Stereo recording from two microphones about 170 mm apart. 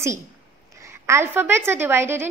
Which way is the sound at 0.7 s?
15° right (ahead or behind).